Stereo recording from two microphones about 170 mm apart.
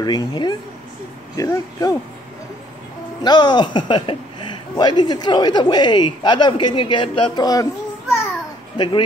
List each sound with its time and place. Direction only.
0.0 s speech: 25° left (ahead or behind)
3.2 s speech: 25° left (ahead or behind)
8.7 s speech: 25° left (ahead or behind)